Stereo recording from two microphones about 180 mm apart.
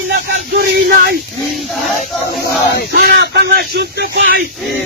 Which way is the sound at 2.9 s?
65° right (ahead or behind).